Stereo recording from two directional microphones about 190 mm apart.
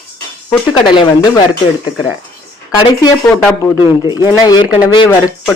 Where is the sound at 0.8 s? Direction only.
25° left (ahead or behind).